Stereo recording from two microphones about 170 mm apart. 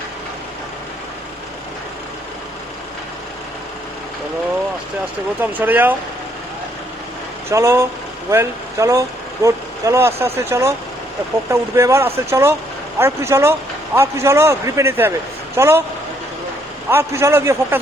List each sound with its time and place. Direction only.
5.4 s a man's voice: 10° right (ahead or behind)
7.5 s a man's voice: 15° right (ahead or behind)
11.8 s a man's voice: 15° right (ahead or behind)
16.9 s a man's voice: 15° right (ahead or behind)